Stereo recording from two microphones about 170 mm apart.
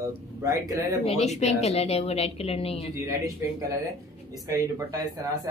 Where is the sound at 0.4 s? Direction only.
20° right (ahead or behind).